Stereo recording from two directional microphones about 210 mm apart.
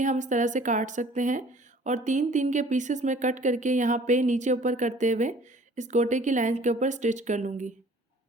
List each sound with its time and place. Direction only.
0.0 s speech: 35° right (ahead or behind)